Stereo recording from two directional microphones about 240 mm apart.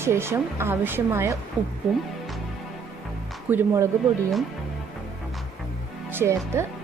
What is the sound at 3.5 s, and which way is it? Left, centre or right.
Speech, centre.